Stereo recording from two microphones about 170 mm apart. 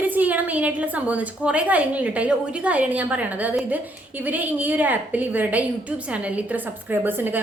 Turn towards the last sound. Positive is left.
turn(degrees=-10)  # may be behind; listen again after turning